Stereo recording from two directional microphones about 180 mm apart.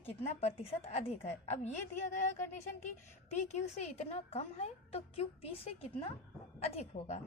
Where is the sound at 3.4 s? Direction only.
40° left (ahead or behind).